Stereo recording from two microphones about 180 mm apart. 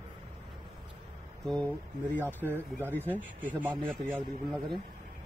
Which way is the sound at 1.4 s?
5° left (ahead or behind).